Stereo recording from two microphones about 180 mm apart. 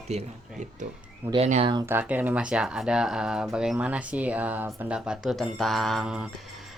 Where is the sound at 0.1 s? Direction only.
40° right (ahead or behind).